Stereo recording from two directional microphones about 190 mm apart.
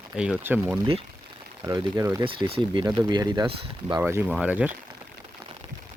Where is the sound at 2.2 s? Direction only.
25° right (ahead or behind).